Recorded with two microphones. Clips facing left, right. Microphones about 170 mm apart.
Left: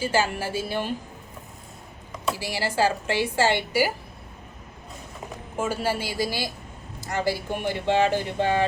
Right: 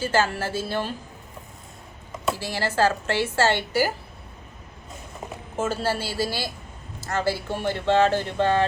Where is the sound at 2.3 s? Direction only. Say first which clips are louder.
Right 1 dB; 10° left (ahead or behind).